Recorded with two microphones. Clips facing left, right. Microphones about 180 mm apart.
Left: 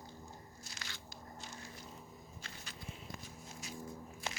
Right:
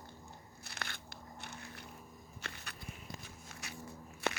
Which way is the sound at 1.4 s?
60° right (ahead or behind).